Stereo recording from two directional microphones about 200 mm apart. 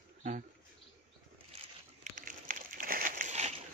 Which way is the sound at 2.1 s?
45° right (ahead or behind).